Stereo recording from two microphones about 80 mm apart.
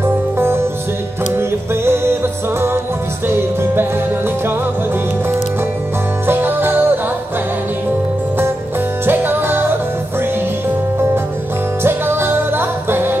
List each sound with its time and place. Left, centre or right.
0.0 s music: right
3.3 s music: right
6.2 s music: right
9.0 s music: right
11.8 s music: right